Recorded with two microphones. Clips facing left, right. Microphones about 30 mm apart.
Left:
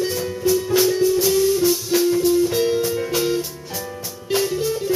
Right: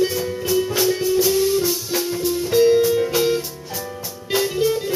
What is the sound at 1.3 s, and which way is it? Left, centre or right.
Music, centre.